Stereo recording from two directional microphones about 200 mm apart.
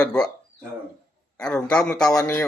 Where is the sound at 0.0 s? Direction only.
5° left (ahead or behind).